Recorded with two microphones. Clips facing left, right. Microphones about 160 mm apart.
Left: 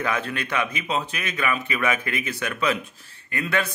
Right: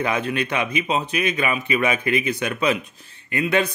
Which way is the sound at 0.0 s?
20° right (ahead or behind).